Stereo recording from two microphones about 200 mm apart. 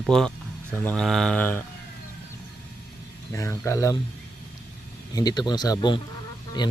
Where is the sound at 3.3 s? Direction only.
15° left (ahead or behind).